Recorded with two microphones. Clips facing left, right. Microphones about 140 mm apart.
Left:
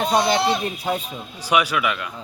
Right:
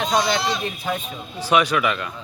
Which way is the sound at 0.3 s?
55° left (ahead or behind).